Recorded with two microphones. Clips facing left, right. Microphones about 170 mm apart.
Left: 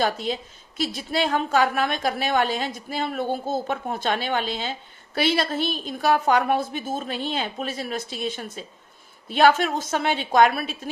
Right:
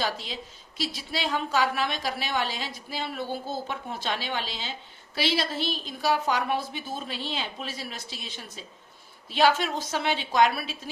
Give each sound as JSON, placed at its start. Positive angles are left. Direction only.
{"t": 0.0, "sound": "a woman's voice", "side_deg": 50}